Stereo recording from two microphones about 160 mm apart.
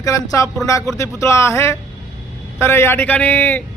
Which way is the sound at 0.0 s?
20° left (ahead or behind).